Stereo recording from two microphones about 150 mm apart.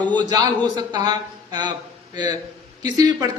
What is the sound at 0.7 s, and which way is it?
Speech, 30° right (ahead or behind).